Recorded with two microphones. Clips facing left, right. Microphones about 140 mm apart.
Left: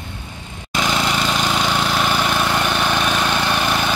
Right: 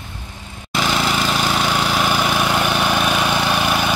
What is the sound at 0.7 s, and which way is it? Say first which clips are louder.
Vehicle: right 1 dB; centre (ahead or behind).